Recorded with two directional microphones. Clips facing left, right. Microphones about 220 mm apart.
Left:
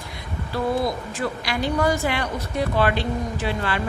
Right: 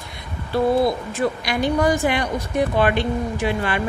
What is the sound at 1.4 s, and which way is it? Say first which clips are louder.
A woman's voice: right 1 dB; 20° right (ahead or behind).